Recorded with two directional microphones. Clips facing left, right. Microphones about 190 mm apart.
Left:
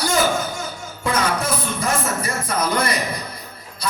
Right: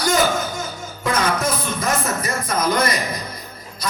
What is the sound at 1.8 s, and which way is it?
Speech, 30° left (ahead or behind).